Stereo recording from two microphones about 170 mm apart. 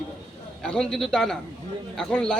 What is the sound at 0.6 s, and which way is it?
A man's voice, 5° left (ahead or behind).